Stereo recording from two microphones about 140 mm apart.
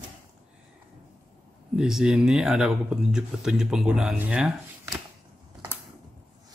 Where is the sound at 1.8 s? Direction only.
5° right (ahead or behind).